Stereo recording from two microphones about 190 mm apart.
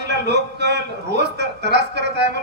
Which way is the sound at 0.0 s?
65° right (ahead or behind).